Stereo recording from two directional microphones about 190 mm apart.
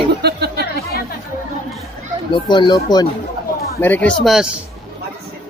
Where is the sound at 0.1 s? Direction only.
60° right (ahead or behind).